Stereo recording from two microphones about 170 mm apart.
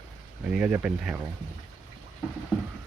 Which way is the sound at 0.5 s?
10° right (ahead or behind).